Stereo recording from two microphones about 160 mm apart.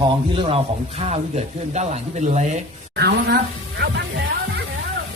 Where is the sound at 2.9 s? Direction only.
90° right.